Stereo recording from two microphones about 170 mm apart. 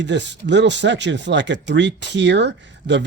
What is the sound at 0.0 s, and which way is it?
Speech, 90° right.